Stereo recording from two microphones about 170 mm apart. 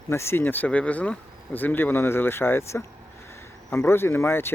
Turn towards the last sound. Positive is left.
turn(degrees=15)  # may be behind; listen again after turning